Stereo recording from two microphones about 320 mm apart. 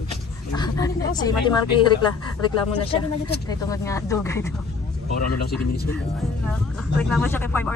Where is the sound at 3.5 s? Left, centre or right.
Centre.